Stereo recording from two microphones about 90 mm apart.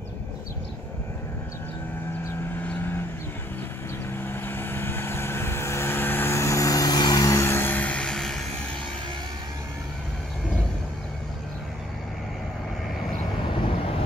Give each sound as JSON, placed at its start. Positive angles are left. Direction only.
{"t": 2.6, "sound": "vehicle", "side_deg": 20}
{"t": 4.2, "sound": "vehicle", "side_deg": 25}